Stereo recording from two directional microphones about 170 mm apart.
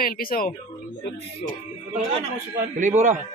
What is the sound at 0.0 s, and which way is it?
Speech, 55° left (ahead or behind).